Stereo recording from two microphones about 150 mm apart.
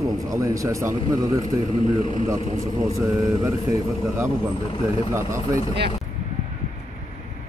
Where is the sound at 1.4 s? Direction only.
35° left (ahead or behind).